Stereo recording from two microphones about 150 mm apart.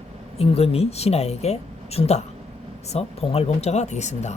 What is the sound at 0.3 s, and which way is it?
Speech, 40° left (ahead or behind).